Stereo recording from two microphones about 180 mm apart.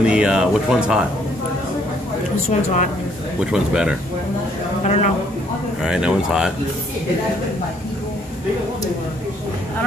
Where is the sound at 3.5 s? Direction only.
5° right (ahead or behind).